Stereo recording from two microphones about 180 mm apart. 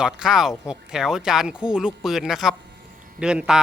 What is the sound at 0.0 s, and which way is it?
Speech, 5° right (ahead or behind).